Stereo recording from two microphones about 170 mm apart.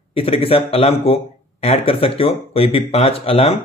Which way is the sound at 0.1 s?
35° left (ahead or behind).